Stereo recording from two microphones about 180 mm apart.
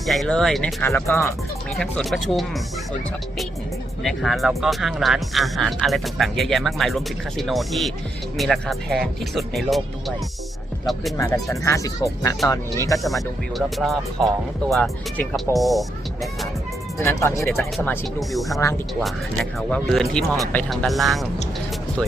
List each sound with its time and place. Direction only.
0.0 s speech: centre (ahead or behind)
1.7 s speech: 5° left (ahead or behind)
4.0 s speech: centre (ahead or behind)
11.4 s speech: 15° left (ahead or behind)
13.0 s speech: centre (ahead or behind)
17.0 s speech: 15° left (ahead or behind)
18.2 s speech: centre (ahead or behind)